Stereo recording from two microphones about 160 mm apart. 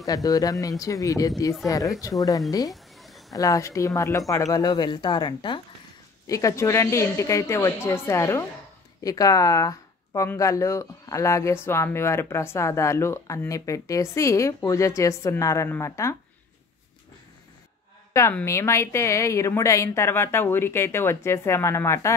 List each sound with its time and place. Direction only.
0.0 s speech: 20° left (ahead or behind)
2.7 s a sound: centre (ahead or behind)
3.3 s speech: 20° left (ahead or behind)
18.3 s speech: 15° left (ahead or behind)